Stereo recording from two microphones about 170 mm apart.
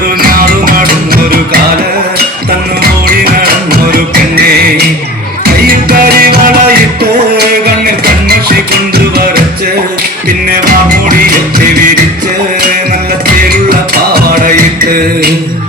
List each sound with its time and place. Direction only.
0.2 s music: 60° right (ahead or behind)
3.4 s music: 60° right (ahead or behind)
5.6 s music: 60° right (ahead or behind)
13.7 s music: 65° right (ahead or behind)